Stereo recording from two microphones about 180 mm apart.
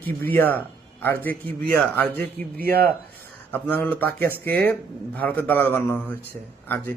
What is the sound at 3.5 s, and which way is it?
Speech, 10° left (ahead or behind).